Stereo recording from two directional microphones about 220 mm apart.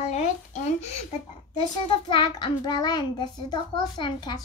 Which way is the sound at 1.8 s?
20° left (ahead or behind).